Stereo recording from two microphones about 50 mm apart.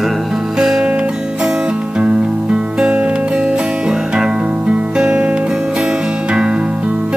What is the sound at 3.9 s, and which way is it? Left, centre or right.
Music, centre.